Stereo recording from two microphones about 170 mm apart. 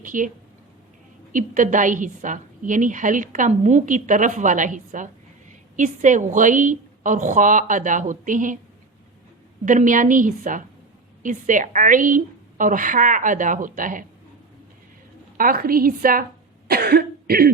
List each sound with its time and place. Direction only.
0.0 s speech: 50° right (ahead or behind)
1.3 s a woman's voice: 50° right (ahead or behind)
9.6 s a woman's voice: 50° right (ahead or behind)
15.4 s a woman's voice: 55° right (ahead or behind)
16.6 s cough: 60° right (ahead or behind)